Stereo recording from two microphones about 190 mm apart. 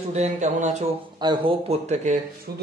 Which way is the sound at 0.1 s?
40° right (ahead or behind).